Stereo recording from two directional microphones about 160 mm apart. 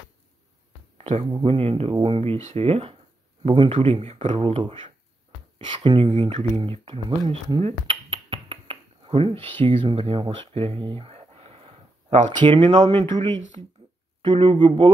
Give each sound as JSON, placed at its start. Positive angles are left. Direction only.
{"t": 0.9, "sound": "a sound", "side_deg": -40}
{"t": 1.3, "sound": "speech", "side_deg": -35}
{"t": 7.6, "sound": "finger snapping", "side_deg": -35}
{"t": 12.6, "sound": "speech", "side_deg": -40}